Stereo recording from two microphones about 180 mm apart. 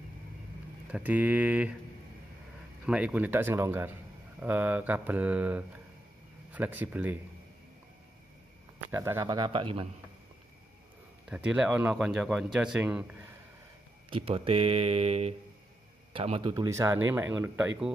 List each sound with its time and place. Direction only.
0.9 s speech: 10° right (ahead or behind)
2.8 s speech: 10° right (ahead or behind)
8.7 s a man's voice: 15° right (ahead or behind); by 9.8 s 30° right (ahead or behind)
11.2 s speech: 5° right (ahead or behind)
14.1 s speech: 30° right (ahead or behind); by 17.6 s 10° right (ahead or behind)